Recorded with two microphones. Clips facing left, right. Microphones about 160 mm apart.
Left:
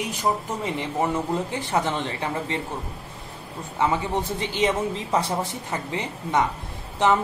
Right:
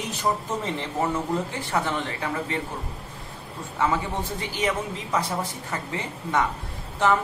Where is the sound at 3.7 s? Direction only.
20° left (ahead or behind).